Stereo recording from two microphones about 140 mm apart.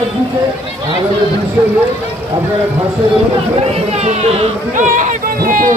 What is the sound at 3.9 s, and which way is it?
Speech, 50° right (ahead or behind).